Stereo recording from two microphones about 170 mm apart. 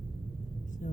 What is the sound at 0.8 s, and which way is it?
Vehicle, 50° left (ahead or behind).